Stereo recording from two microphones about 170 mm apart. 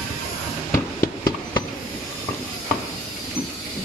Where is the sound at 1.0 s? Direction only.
20° left (ahead or behind).